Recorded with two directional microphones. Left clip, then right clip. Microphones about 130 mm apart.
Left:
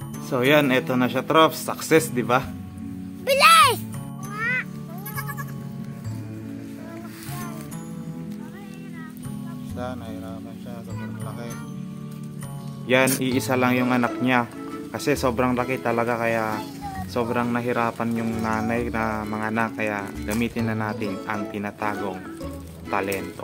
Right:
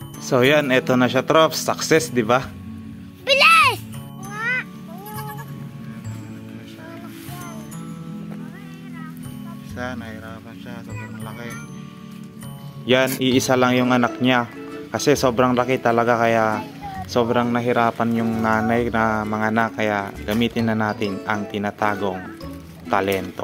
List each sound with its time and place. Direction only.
0.3 s speech: 50° right (ahead or behind); by 2.4 s 35° right (ahead or behind)
12.8 s speech: 55° right (ahead or behind)
13.2 s speech: 40° right (ahead or behind)
14.2 s speech: 45° right (ahead or behind)